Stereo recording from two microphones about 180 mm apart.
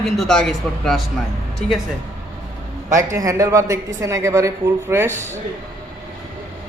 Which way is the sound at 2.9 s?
15° right (ahead or behind).